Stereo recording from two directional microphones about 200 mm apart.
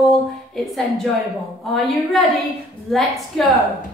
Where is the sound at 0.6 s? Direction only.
Centre (ahead or behind).